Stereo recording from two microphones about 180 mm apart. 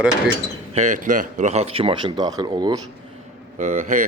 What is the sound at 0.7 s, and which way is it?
Speech, 40° right (ahead or behind).